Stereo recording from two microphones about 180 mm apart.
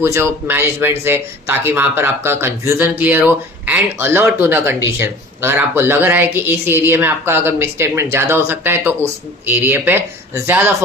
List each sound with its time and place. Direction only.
0.0 s speech: 15° right (ahead or behind)